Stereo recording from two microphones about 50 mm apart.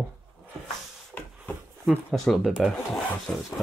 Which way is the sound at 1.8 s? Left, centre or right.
Centre.